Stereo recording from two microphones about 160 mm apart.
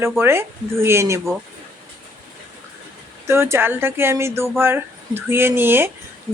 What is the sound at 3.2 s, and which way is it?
Speech, 15° right (ahead or behind).